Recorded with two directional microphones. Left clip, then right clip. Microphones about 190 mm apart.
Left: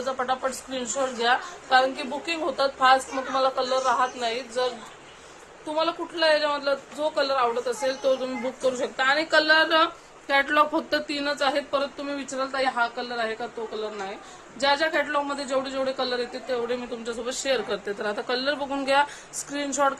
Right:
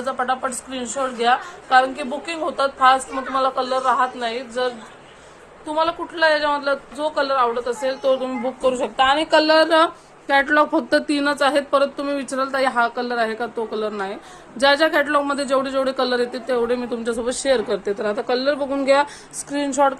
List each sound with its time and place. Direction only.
0.0 s a woman's voice: 15° right (ahead or behind); by 8.9 s centre (ahead or behind)
9.0 s a woman's voice: 15° right (ahead or behind); by 9.9 s 35° right (ahead or behind)
10.2 s a man's voice: 20° right (ahead or behind)